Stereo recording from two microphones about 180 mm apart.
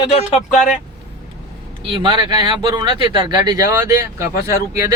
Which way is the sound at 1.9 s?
25° right (ahead or behind).